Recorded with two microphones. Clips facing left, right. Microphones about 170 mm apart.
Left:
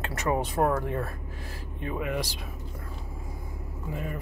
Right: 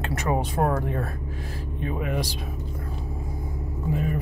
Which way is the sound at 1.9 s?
30° right (ahead or behind).